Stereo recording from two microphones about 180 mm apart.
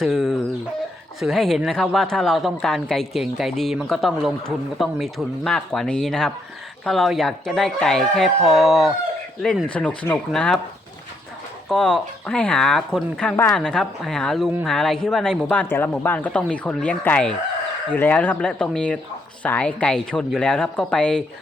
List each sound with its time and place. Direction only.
0.0 s speech: centre (ahead or behind)
11.7 s speech: 5° left (ahead or behind)